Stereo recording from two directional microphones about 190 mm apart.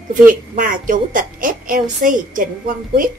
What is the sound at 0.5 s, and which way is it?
A woman's voice, 45° right (ahead or behind).